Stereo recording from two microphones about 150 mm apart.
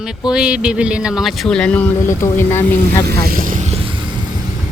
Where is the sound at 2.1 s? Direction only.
15° left (ahead or behind).